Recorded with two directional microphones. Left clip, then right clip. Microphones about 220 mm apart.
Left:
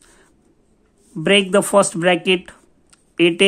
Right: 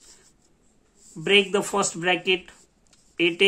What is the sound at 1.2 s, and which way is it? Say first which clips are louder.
Speech: left 5 dB; 40° left (ahead or behind).